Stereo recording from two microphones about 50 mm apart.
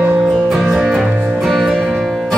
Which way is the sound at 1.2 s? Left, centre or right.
Centre.